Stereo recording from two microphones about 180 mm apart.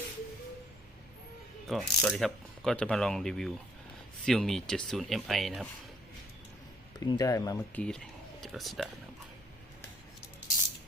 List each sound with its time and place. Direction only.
1.6 s speech: centre (ahead or behind)
7.0 s speech: 20° left (ahead or behind)
7.8 s speech: 5° left (ahead or behind)